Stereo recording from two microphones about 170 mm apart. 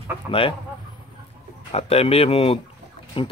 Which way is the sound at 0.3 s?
35° left (ahead or behind).